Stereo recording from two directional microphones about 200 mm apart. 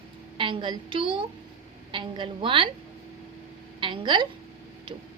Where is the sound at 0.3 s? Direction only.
25° right (ahead or behind).